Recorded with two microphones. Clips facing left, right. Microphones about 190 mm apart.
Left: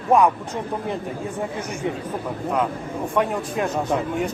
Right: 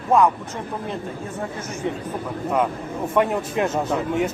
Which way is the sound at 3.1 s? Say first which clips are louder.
Right 2 dB; 5° right (ahead or behind).